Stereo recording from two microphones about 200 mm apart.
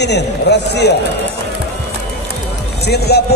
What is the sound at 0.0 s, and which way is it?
Speech, 55° left (ahead or behind).